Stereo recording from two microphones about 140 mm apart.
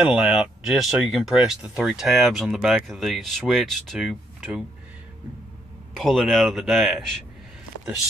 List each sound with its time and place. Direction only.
0.0 s speech: 5° right (ahead or behind)
5.9 s speech: centre (ahead or behind)